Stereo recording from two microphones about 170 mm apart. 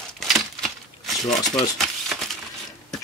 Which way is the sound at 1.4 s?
Centre (ahead or behind).